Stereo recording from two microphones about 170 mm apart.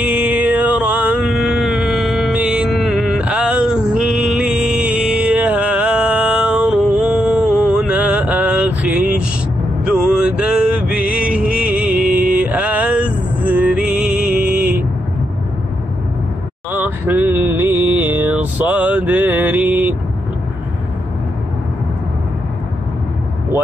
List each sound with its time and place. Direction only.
0.0 s a sound: 10° right (ahead or behind)
9.8 s music: 5° right (ahead or behind)
16.7 s mantra: 10° right (ahead or behind)